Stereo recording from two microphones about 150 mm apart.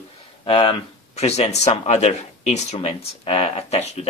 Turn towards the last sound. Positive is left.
turn(degrees=45)  # may be behind; listen again after turning